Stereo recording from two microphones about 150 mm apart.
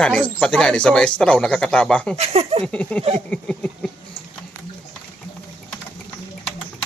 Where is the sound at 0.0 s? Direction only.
5° left (ahead or behind).